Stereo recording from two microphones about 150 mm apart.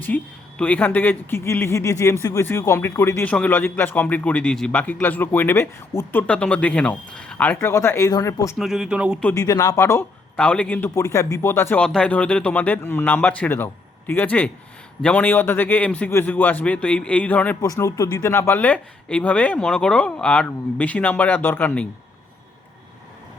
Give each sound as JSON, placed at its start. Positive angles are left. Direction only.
{"t": 0.1, "sound": "a man's voice", "side_deg": 10}
{"t": 8.5, "sound": "speech", "side_deg": 0}
{"t": 9.3, "sound": "speech", "side_deg": 20}
{"t": 10.3, "sound": "a man's voice", "side_deg": 5}
{"t": 11.8, "sound": "a man's voice", "side_deg": 5}
{"t": 17.6, "sound": "a man's voice", "side_deg": 20}